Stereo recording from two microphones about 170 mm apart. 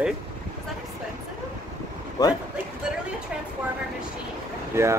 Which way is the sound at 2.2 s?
25° left (ahead or behind).